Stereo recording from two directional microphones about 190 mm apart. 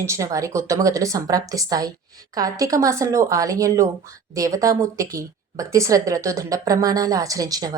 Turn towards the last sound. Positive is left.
turn(degrees=-20)  # may be behind; listen again after turning